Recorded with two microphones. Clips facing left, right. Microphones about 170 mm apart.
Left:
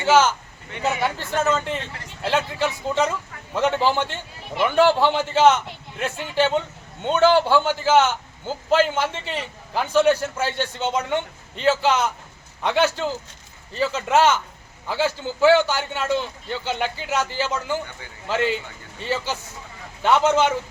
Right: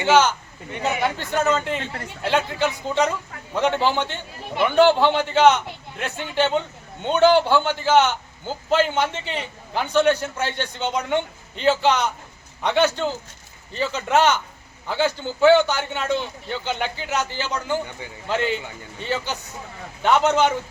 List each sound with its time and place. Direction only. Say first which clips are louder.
0.0 s a man's voice: even; 5° left (ahead or behind)